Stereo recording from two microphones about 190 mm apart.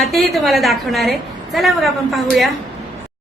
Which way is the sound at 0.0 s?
Centre (ahead or behind).